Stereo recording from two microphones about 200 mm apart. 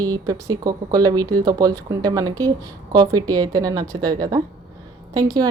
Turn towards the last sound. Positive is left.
turn(degrees=-20)  # may be behind; listen again after turning